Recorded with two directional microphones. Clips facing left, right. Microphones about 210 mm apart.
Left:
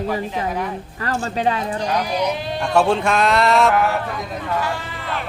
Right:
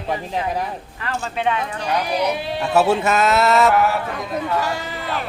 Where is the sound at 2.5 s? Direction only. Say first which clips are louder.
Even; 5° right (ahead or behind).